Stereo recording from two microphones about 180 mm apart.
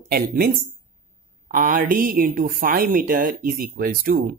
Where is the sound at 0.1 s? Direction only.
55° right (ahead or behind).